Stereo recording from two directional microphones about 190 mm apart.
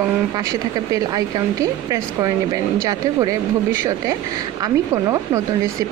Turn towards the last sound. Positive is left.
turn(degrees=-20)  # may be behind; listen again after turning